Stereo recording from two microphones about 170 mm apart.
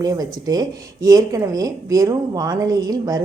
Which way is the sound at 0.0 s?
20° right (ahead or behind).